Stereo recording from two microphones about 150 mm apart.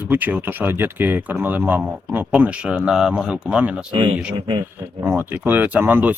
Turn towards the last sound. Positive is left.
turn(degrees=-10)  # may be behind; listen again after turning